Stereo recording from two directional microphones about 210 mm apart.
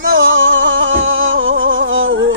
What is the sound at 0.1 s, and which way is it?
Music, 65° right (ahead or behind).